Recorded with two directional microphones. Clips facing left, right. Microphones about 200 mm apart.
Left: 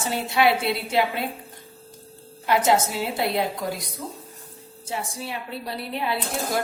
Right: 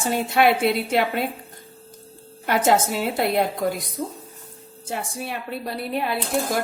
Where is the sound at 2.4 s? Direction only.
50° right (ahead or behind).